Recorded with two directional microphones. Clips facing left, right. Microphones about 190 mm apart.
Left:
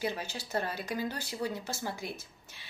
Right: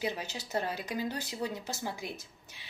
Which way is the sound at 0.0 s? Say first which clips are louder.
Even; 15° right (ahead or behind).